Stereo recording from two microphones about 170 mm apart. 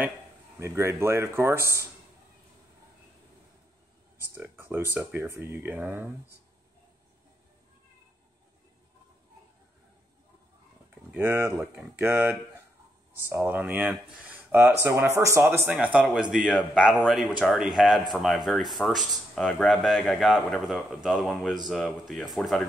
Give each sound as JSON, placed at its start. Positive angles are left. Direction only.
{"t": 0.6, "sound": "speech", "side_deg": -15}
{"t": 4.3, "sound": "speech", "side_deg": -10}
{"t": 11.1, "sound": "a man's voice", "side_deg": -10}